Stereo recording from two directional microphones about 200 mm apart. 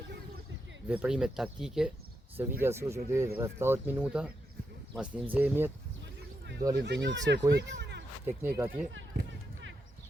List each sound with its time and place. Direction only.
0.9 s speech: 5° right (ahead or behind)
5.3 s speech: 10° right (ahead or behind)
6.7 s speech: 60° right (ahead or behind)
7.5 s a sound: 60° right (ahead or behind)
8.2 s speech: 10° right (ahead or behind)
8.9 s basketball bounce: 70° right (ahead or behind)